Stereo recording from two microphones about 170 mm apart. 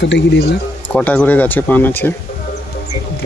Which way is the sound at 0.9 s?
5° left (ahead or behind).